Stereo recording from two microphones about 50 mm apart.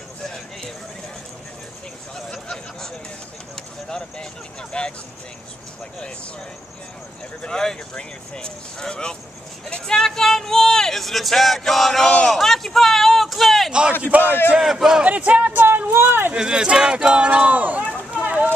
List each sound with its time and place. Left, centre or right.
2.3 s a sound: centre
4.7 s speech: left
7.4 s speech: centre
12.3 s a sound: centre
13.7 s a man's voice: centre
14.0 s a man's voice: right
14.6 s a man's voice: centre
15.0 s a man's voice: right
16.3 s speech: centre
18.1 s a sound: right